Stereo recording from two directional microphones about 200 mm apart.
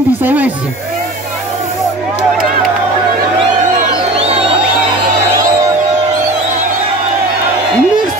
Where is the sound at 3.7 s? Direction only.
30° right (ahead or behind).